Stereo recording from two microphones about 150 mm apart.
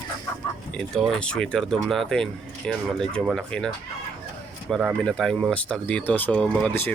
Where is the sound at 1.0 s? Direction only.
5° left (ahead or behind).